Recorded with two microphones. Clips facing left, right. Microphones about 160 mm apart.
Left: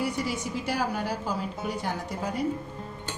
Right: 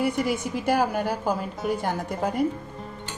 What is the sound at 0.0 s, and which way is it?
A woman's voice, 55° right (ahead or behind).